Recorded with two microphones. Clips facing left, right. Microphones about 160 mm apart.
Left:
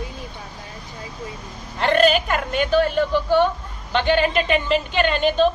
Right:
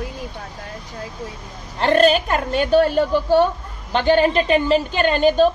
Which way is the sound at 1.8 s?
40° right (ahead or behind).